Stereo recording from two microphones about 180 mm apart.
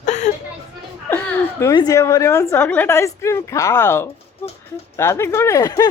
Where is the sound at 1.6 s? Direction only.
20° left (ahead or behind).